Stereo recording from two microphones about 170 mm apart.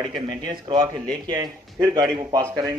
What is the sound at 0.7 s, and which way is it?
Speech, 30° right (ahead or behind).